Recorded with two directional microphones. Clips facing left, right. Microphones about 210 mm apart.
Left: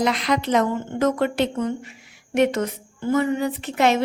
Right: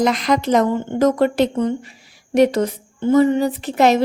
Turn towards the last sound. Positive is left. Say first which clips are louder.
# right 4 dB
turn(degrees=-35)  # may be behind; listen again after turning